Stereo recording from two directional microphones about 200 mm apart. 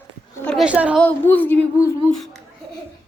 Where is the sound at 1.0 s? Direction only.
10° left (ahead or behind).